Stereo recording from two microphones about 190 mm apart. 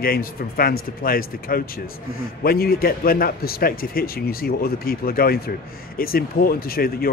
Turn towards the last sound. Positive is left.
turn(degrees=50)  # may be behind; listen again after turning